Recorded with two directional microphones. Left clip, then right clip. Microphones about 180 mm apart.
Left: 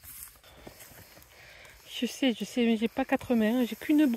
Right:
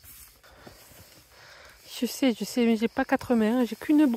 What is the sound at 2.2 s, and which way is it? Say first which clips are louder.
Speech: right 3 dB; 25° right (ahead or behind).